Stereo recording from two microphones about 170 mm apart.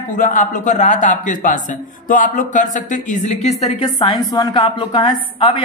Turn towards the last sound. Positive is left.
turn(degrees=30)  # may be behind; listen again after turning